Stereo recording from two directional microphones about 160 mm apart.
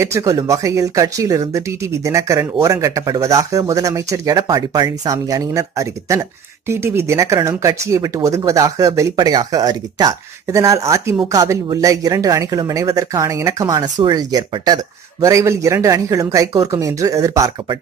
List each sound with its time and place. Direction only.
0.0 s a woman's voice: 20° right (ahead or behind)